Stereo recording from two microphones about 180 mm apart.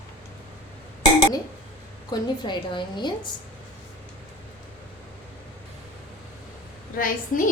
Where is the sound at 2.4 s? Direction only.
25° left (ahead or behind).